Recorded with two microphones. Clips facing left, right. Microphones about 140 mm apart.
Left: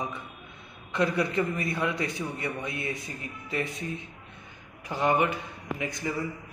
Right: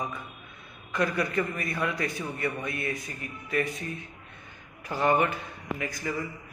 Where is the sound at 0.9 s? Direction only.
25° left (ahead or behind).